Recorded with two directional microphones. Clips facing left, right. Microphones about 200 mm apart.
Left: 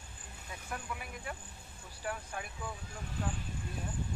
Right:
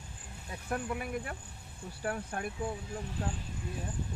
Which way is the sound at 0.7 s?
55° right (ahead or behind).